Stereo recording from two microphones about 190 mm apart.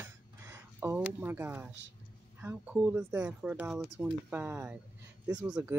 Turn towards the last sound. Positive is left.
turn(degrees=-10)  # may be behind; listen again after turning